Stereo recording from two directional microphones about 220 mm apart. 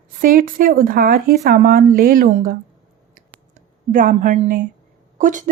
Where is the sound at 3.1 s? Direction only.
35° right (ahead or behind).